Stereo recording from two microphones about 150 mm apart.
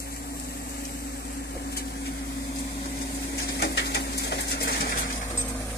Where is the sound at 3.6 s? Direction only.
90° left.